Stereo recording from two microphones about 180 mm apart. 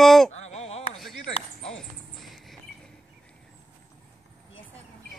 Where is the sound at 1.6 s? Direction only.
Centre (ahead or behind).